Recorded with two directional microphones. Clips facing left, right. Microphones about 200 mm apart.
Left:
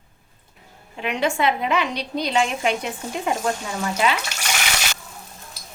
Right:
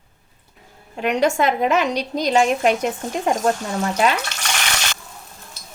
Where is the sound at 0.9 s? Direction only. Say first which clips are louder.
Right 5 dB; 45° right (ahead or behind).